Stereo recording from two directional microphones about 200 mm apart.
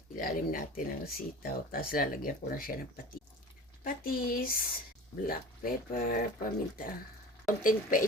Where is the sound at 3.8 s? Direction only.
45° left (ahead or behind).